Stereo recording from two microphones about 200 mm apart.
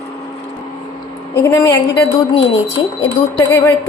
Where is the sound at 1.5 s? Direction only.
15° left (ahead or behind).